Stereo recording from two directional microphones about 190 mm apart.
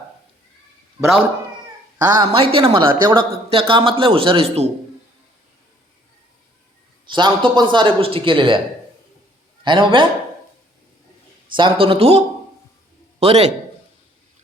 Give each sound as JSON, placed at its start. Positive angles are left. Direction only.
{"t": 2.0, "sound": "speech", "side_deg": -20}
{"t": 7.0, "sound": "speech", "side_deg": -25}
{"t": 9.6, "sound": "speech", "side_deg": -25}
{"t": 11.5, "sound": "a man's voice", "side_deg": -25}